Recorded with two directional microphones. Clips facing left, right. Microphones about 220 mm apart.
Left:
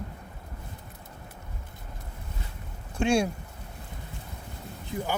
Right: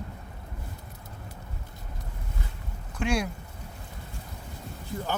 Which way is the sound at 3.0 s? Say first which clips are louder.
Left 4 dB; 25° left (ahead or behind).